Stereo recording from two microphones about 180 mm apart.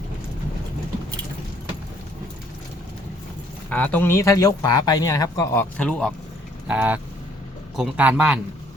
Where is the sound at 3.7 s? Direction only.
10° left (ahead or behind).